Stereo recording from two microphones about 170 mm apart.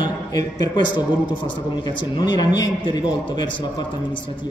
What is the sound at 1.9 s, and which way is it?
A man's voice, 25° left (ahead or behind).